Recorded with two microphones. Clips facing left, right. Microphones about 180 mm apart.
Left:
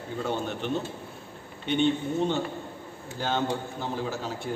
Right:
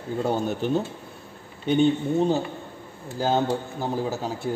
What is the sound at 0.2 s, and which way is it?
Speech, 40° right (ahead or behind).